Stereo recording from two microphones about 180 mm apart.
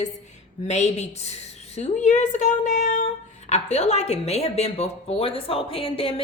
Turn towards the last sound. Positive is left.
turn(degrees=30)  # may be behind; listen again after turning